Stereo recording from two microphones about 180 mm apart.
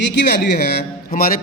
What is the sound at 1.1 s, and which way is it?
Speech, 50° left (ahead or behind).